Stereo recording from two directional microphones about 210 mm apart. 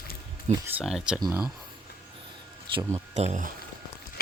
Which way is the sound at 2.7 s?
15° right (ahead or behind).